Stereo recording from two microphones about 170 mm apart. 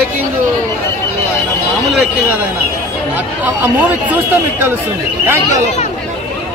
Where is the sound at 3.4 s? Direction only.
10° right (ahead or behind).